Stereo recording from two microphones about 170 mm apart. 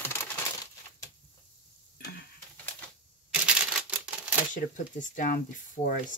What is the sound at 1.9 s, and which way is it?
Tick-tock, 65° left (ahead or behind).